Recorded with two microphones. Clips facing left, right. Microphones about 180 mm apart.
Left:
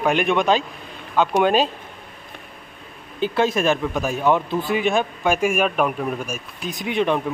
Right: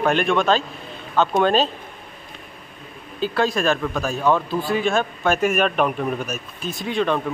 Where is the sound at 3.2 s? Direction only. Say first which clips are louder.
Left 1 dB; 20° left (ahead or behind).